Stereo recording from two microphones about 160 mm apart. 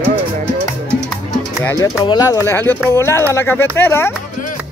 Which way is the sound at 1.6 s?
20° left (ahead or behind).